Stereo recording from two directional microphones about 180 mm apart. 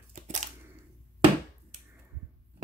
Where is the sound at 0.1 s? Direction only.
40° right (ahead or behind).